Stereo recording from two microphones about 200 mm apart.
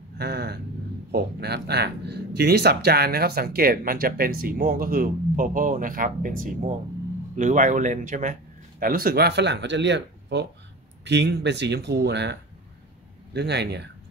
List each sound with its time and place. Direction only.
0.2 s vehicle: 55° right (ahead or behind)
1.1 s speech: 55° right (ahead or behind)